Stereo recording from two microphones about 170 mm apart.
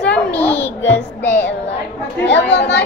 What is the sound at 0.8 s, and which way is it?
Speech, 90° left.